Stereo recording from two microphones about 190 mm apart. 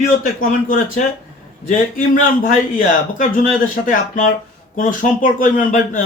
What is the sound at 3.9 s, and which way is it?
A man's voice, 45° left (ahead or behind).